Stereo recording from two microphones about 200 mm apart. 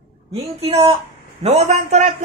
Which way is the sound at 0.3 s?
30° right (ahead or behind).